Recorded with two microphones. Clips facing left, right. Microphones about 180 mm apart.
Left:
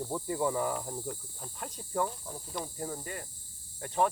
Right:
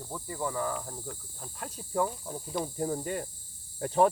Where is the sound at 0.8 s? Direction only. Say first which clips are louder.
Left 3 dB; 10° left (ahead or behind); by 2.7 s 10° right (ahead or behind).